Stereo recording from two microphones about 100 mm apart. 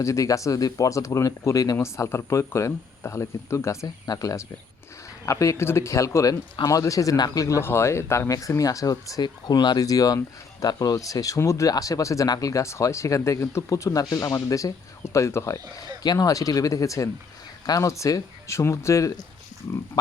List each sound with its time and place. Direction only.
0.0 s speech: 35° left (ahead or behind)
3.8 s speech: 40° left (ahead or behind)